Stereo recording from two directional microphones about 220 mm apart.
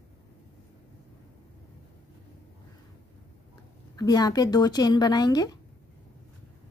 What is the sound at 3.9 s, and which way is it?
Speech, 20° left (ahead or behind).